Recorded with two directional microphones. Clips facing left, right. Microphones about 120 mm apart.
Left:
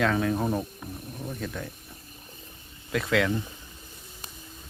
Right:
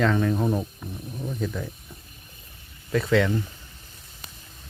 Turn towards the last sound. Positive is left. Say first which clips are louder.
# right 4 dB
turn(degrees=0)  # may be behind; listen again after turning